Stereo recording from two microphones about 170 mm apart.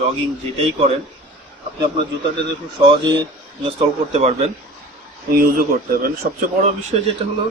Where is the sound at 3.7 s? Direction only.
40° right (ahead or behind).